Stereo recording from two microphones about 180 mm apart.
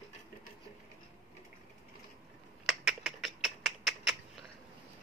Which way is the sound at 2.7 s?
Centre (ahead or behind).